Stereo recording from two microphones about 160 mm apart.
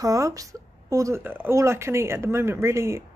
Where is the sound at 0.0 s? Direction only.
20° right (ahead or behind).